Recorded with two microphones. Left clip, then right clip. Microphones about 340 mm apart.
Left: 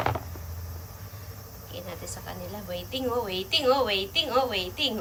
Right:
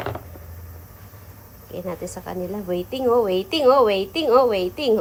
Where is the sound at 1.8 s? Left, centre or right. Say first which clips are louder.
Right 10 dB; centre.